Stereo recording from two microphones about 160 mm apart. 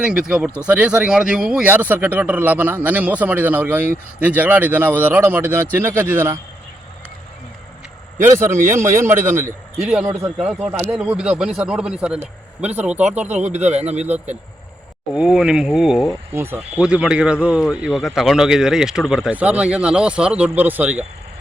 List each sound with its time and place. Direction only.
0.0 s speech: 5° right (ahead or behind)
8.2 s speech: 15° right (ahead or behind)
9.9 s speech: 5° right (ahead or behind)
13.3 s a man's voice: 45° right (ahead or behind)
15.1 s speech: 5° right (ahead or behind)
16.3 s speech: 15° right (ahead or behind)